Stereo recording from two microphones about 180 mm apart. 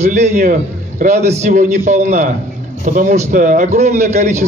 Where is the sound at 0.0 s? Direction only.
40° right (ahead or behind).